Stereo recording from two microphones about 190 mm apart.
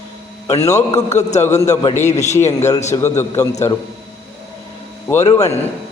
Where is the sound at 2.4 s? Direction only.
15° left (ahead or behind).